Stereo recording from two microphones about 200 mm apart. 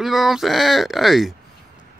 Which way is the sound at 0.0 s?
Centre (ahead or behind).